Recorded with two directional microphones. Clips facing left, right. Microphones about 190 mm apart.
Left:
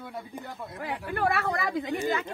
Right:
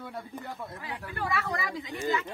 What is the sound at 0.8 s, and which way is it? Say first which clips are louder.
Speech: left 9 dB; 65° left (ahead or behind).